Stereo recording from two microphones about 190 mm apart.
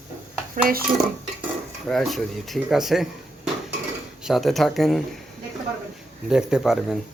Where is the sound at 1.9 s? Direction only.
Centre (ahead or behind).